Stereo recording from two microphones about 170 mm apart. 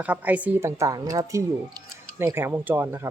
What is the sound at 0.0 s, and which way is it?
Speech, 10° right (ahead or behind).